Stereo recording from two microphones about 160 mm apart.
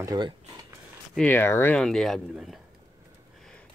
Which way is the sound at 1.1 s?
10° left (ahead or behind).